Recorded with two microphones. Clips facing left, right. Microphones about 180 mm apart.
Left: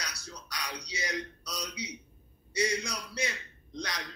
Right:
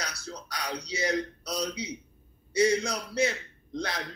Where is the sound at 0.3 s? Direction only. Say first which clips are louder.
Right 6 dB; 30° right (ahead or behind).